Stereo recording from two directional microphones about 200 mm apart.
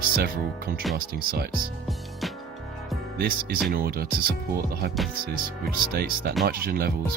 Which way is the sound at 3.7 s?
50° right (ahead or behind).